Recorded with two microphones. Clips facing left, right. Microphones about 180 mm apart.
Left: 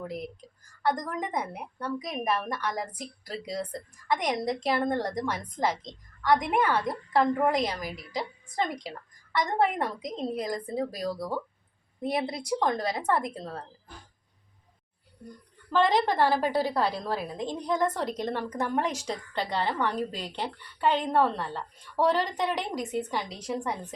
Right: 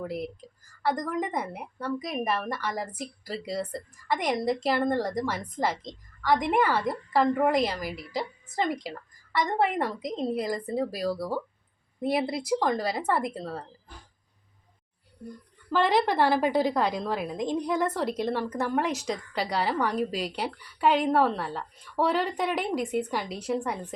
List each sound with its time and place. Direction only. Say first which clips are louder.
0.8 s a woman's voice: right 1 dB; 5° right (ahead or behind)
15.7 s a woman's voice: even; 10° right (ahead or behind)